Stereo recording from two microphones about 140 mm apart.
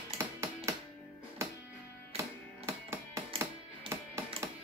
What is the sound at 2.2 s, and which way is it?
Music, 20° right (ahead or behind).